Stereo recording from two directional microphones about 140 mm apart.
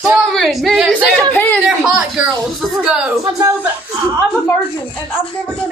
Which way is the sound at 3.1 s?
25° right (ahead or behind).